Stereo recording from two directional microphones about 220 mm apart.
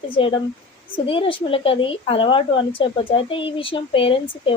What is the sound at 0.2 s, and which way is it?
Speech, 25° left (ahead or behind).